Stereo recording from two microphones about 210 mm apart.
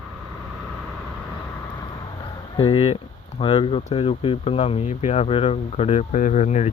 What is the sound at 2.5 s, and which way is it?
Speech, 25° left (ahead or behind).